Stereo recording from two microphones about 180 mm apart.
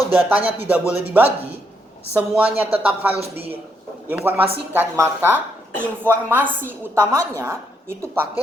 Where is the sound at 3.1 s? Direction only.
35° right (ahead or behind).